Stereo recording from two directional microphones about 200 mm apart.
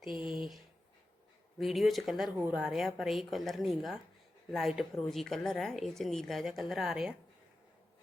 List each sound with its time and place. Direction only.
0.2 s speech: 20° left (ahead or behind)
1.5 s a woman's voice: centre (ahead or behind)